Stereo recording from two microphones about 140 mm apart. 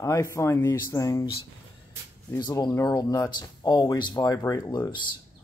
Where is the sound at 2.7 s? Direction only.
20° left (ahead or behind).